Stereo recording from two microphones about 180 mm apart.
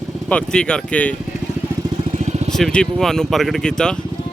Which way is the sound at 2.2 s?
40° right (ahead or behind).